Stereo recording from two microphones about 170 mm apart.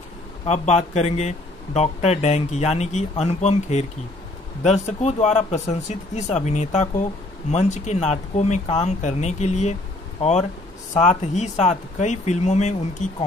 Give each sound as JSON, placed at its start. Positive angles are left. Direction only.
{"t": 0.5, "sound": "speech", "side_deg": 40}
{"t": 11.0, "sound": "speech", "side_deg": 45}